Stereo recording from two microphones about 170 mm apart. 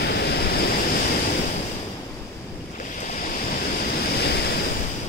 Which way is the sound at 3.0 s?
50° left (ahead or behind).